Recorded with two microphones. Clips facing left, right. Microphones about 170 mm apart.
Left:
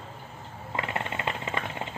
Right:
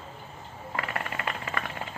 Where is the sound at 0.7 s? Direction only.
25° left (ahead or behind).